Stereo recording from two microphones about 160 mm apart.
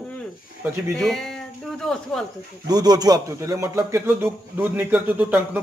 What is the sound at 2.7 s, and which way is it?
A man's voice, 25° right (ahead or behind).